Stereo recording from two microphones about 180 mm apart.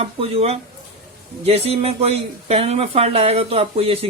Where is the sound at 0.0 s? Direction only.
35° right (ahead or behind).